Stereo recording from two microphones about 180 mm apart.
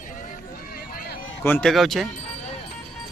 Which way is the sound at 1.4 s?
5° left (ahead or behind).